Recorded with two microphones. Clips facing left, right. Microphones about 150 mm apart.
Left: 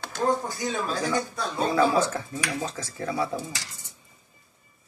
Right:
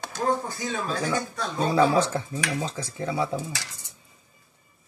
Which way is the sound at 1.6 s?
30° right (ahead or behind).